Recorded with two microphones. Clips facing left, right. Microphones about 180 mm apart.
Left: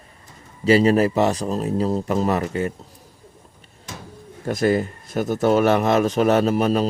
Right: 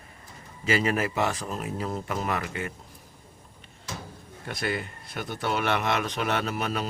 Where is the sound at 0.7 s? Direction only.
35° left (ahead or behind).